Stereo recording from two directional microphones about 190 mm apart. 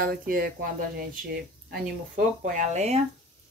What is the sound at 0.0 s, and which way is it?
Speech, 50° right (ahead or behind).